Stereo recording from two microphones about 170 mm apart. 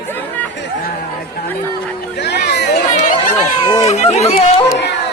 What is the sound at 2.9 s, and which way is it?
Chatter, 50° left (ahead or behind).